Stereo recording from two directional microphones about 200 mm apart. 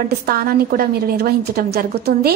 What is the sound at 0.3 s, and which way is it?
A woman's voice, 50° right (ahead or behind).